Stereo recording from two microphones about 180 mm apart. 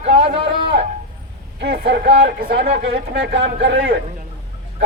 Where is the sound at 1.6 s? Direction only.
75° right (ahead or behind).